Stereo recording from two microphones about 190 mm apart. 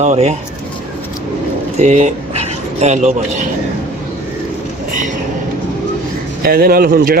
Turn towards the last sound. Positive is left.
turn(degrees=-50)  # may be behind; listen again after turning